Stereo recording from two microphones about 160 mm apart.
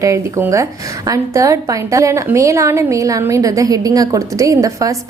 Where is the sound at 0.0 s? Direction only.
20° right (ahead or behind).